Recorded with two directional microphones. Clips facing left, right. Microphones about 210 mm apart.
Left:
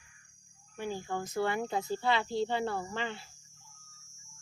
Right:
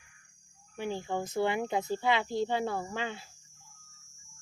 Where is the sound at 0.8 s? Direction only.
20° right (ahead or behind).